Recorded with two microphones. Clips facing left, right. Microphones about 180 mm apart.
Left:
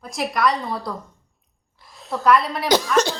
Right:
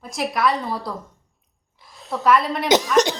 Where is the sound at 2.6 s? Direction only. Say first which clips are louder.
Right 1 dB; 20° right (ahead or behind).